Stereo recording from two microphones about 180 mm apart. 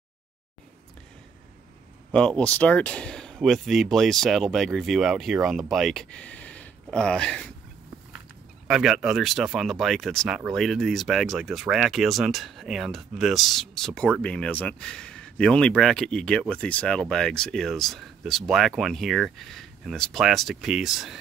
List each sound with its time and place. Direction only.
2.1 s speech: 5° left (ahead or behind)
8.6 s speech: 5° right (ahead or behind)